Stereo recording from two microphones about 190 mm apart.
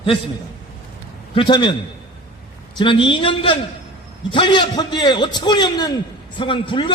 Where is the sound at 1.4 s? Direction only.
25° left (ahead or behind).